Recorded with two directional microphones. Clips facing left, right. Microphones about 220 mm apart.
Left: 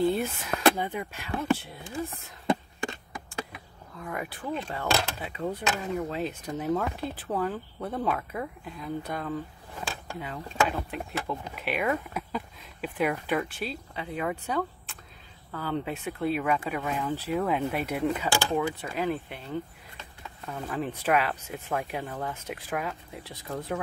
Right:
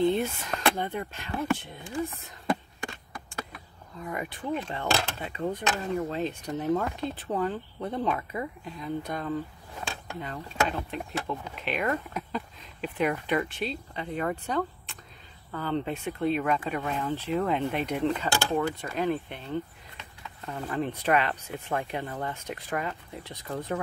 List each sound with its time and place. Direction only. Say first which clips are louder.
0.0 s speech: right 1 dB; 5° left (ahead or behind)
4.0 s speech: right 1 dB; centre (ahead or behind)